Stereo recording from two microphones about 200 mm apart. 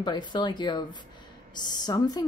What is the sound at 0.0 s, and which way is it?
A woman's voice, 20° left (ahead or behind).